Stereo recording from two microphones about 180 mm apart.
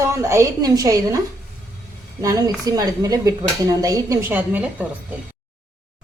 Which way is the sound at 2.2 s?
20° right (ahead or behind).